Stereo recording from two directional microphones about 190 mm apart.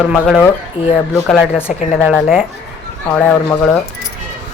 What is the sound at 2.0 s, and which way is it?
Speech, 5° right (ahead or behind).